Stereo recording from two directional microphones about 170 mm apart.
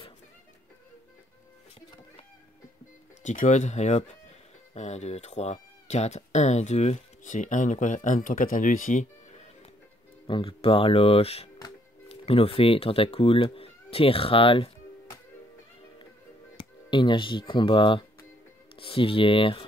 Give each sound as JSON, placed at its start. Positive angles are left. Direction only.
{"t": 3.3, "sound": "speech", "side_deg": 45}
{"t": 10.2, "sound": "speech", "side_deg": 30}
{"t": 16.9, "sound": "speech", "side_deg": 30}